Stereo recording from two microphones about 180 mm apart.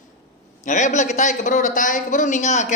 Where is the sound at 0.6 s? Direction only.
40° left (ahead or behind).